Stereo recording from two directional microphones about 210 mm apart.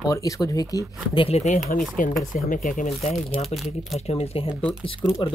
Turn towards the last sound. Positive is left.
turn(degrees=20)  # may be behind; listen again after turning